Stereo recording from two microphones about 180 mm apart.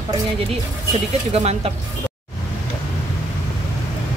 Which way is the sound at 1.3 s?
35° right (ahead or behind).